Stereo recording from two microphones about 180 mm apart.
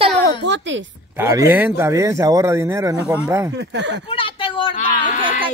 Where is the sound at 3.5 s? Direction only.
75° right (ahead or behind).